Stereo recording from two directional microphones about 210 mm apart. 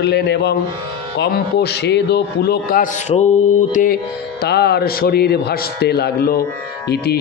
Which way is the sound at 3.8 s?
35° left (ahead or behind).